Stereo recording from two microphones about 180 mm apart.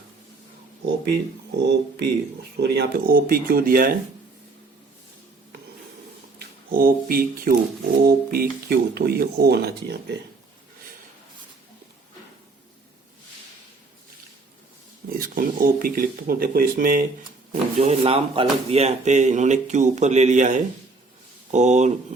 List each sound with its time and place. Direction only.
1.6 s speech: 65° right (ahead or behind)
6.7 s speech: 50° right (ahead or behind)
15.1 s speech: 55° right (ahead or behind)
17.5 s speech: 35° right (ahead or behind)